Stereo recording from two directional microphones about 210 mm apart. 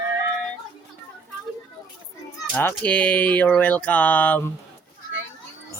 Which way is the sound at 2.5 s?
10° left (ahead or behind).